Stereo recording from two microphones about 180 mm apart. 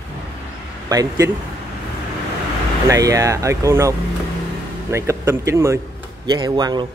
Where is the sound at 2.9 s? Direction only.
20° right (ahead or behind).